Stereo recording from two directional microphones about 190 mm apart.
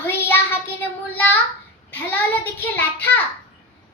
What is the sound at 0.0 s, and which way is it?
Child singing, 10° left (ahead or behind).